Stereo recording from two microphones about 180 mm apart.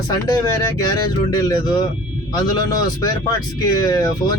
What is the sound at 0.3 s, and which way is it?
Speech, 20° left (ahead or behind).